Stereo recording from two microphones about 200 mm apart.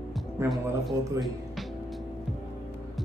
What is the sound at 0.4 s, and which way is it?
Speech, 15° right (ahead or behind).